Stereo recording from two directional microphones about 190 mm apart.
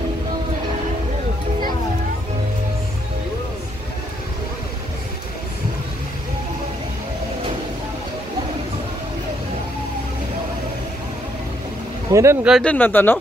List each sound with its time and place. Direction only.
12.1 s speech: 15° right (ahead or behind)
12.4 s speech: 5° left (ahead or behind)